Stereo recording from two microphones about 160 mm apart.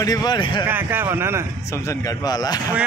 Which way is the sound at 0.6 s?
15° right (ahead or behind).